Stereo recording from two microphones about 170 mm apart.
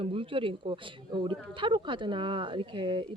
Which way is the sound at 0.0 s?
30° right (ahead or behind).